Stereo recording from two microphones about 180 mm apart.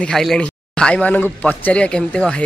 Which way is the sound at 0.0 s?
Centre (ahead or behind).